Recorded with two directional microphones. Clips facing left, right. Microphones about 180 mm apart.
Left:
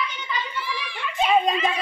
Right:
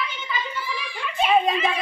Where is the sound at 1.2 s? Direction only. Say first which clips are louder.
Even; 5° right (ahead or behind).